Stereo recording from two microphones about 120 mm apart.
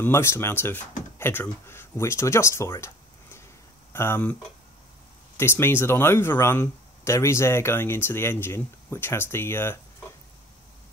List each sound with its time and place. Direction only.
0.0 s speech: 20° left (ahead or behind)
2.8 s a sound: 20° left (ahead or behind)
3.9 s speech: 20° left (ahead or behind)
5.4 s speech: 20° left (ahead or behind)